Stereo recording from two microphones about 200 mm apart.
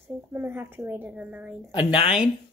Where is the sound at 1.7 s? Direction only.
25° left (ahead or behind).